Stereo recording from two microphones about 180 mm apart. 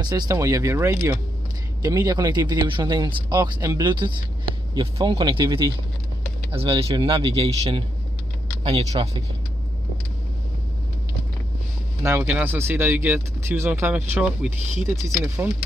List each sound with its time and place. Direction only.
0.0 s speech: 20° right (ahead or behind)
12.0 s speech: 10° right (ahead or behind)